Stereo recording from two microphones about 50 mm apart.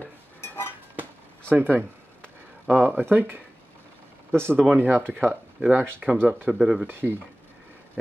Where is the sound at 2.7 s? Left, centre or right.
Right.